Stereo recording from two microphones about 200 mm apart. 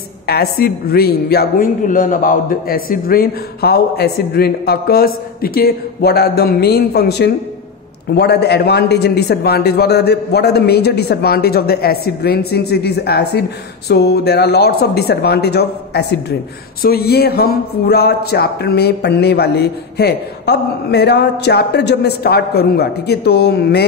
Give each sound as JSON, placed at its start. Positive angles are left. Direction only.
{"t": 0.3, "sound": "a man's voice", "side_deg": 50}